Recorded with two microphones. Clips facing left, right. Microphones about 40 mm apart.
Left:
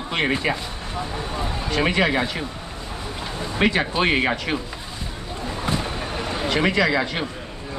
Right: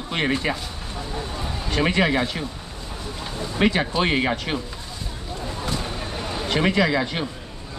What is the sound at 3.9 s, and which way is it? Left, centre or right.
Speech, left.